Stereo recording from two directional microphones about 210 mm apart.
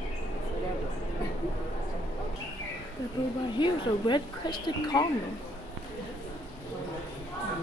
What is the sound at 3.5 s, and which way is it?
Speech, 20° left (ahead or behind).